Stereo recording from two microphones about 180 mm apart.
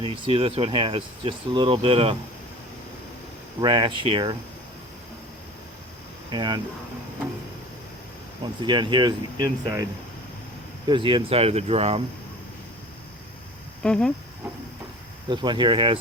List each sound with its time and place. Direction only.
0.0 s speech: 30° right (ahead or behind)
3.6 s speech: 25° right (ahead or behind)
6.3 s speech: 25° right (ahead or behind)
8.6 s speech: 25° right (ahead or behind)
10.8 s speech: 25° right (ahead or behind)
13.8 s speech: 5° left (ahead or behind)
15.3 s speech: 25° right (ahead or behind)